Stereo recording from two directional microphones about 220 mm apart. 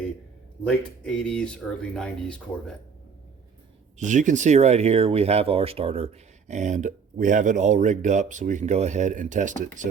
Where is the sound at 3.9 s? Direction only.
35° right (ahead or behind).